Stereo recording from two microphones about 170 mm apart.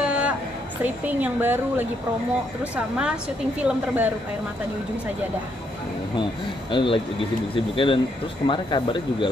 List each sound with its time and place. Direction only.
0.0 s a sound: 5° right (ahead or behind)
0.8 s a woman's voice: 10° right (ahead or behind)
6.7 s speech: 30° left (ahead or behind)